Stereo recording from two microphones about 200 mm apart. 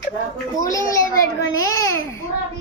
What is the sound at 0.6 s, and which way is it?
A child's voice, 15° left (ahead or behind).